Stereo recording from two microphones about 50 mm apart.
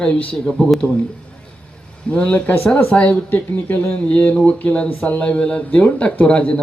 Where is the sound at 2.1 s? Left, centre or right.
Left.